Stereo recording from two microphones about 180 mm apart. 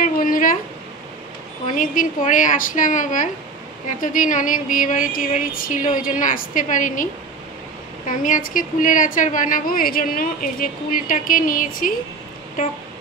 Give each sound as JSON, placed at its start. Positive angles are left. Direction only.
{"t": 0.0, "sound": "a sound", "side_deg": 50}
{"t": 1.8, "sound": "a woman's voice", "side_deg": 45}
{"t": 8.1, "sound": "a woman's voice", "side_deg": 45}